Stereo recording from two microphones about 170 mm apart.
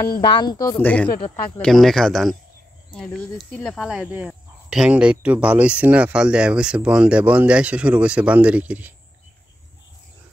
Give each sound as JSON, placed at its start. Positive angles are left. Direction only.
{"t": 0.2, "sound": "speech", "side_deg": 25}
{"t": 0.7, "sound": "speech", "side_deg": 10}